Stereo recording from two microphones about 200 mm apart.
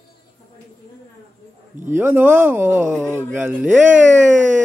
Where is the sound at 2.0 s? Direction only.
10° right (ahead or behind).